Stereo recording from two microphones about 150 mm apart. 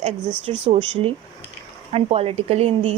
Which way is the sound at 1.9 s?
40° right (ahead or behind).